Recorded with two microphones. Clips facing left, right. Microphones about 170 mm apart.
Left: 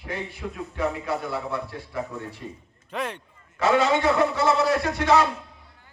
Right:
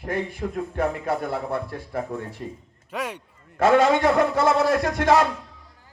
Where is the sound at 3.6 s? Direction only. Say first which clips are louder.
Right 3 dB; 50° right (ahead or behind).